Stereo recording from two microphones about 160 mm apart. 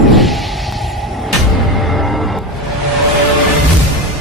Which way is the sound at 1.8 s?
Centre (ahead or behind).